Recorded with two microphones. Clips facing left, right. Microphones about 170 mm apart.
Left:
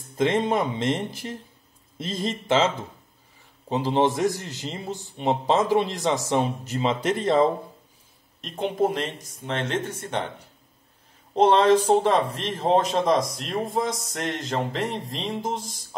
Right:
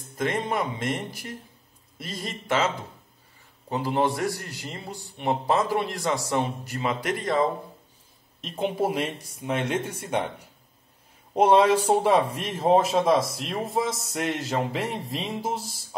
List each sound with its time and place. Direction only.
0.2 s a man's voice: 25° left (ahead or behind)
8.4 s a man's voice: centre (ahead or behind)